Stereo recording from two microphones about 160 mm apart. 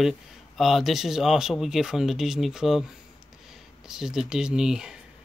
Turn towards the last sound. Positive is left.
turn(degrees=-5)  # may be behind; listen again after turning